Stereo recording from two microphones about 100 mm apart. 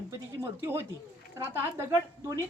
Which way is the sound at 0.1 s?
25° right (ahead or behind).